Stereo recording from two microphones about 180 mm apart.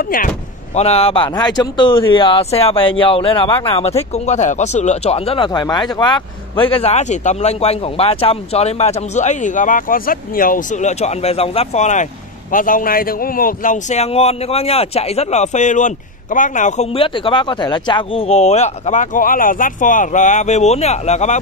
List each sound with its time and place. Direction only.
0.0 s speech: 50° left (ahead or behind)
0.7 s speech: 35° left (ahead or behind)